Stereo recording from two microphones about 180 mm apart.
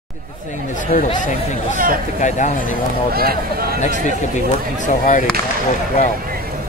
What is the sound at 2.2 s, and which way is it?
Speech, 40° left (ahead or behind).